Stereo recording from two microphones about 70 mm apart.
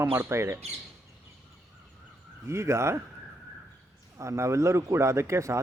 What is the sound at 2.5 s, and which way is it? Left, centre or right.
Speech, right.